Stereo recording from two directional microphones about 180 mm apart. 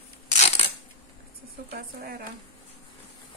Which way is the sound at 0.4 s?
35° left (ahead or behind).